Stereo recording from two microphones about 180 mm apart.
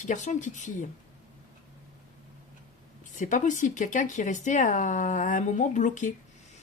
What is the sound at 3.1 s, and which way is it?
Speech, 45° left (ahead or behind).